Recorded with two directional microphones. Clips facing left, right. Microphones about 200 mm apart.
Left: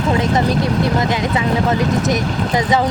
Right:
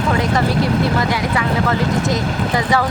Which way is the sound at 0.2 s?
20° left (ahead or behind).